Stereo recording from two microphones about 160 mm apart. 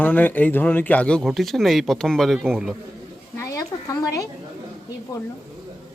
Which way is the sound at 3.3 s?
20° left (ahead or behind).